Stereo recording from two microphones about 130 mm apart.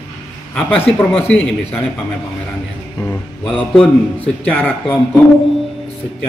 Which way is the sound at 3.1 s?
10° left (ahead or behind).